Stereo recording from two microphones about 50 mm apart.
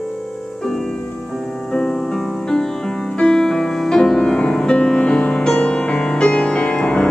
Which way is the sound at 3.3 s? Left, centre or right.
Centre.